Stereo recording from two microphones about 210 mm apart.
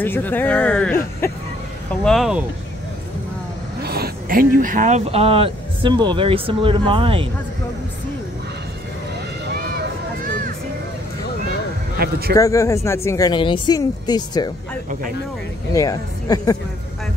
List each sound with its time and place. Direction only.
0.0 s speech: 10° left (ahead or behind)
2.0 s speech: centre (ahead or behind)
3.8 s speech: 45° right (ahead or behind); by 7.2 s 25° right (ahead or behind)
12.0 s a man's voice: 45° right (ahead or behind)
12.4 s speech: 15° left (ahead or behind)
15.7 s speech: 15° left (ahead or behind)